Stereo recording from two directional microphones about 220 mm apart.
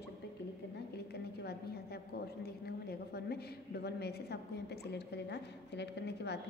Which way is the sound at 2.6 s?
45° left (ahead or behind).